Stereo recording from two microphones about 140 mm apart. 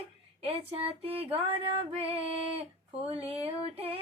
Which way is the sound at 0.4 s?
45° right (ahead or behind).